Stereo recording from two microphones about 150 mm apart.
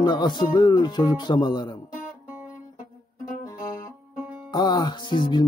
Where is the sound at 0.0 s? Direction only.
30° left (ahead or behind).